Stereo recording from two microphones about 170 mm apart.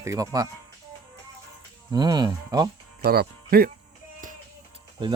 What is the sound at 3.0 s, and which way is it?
Speech, 65° right (ahead or behind).